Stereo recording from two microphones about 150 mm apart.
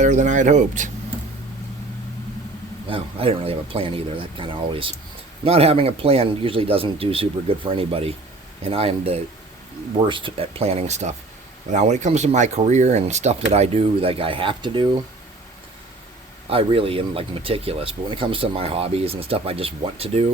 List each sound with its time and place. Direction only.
0.0 s speech: 55° right (ahead or behind)
2.9 s speech: 40° right (ahead or behind)
16.5 s speech: 40° right (ahead or behind)